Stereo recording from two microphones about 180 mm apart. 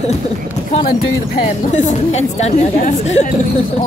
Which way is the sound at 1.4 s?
40° left (ahead or behind).